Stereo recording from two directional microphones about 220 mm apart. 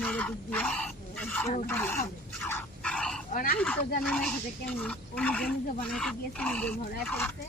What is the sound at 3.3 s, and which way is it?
Speech, 40° left (ahead or behind).